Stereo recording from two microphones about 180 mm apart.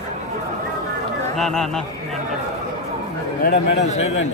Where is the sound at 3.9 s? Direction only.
40° left (ahead or behind).